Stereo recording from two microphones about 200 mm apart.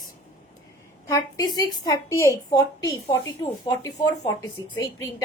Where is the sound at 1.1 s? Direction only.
20° left (ahead or behind).